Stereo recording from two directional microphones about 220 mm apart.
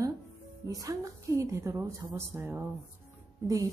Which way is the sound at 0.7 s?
15° right (ahead or behind).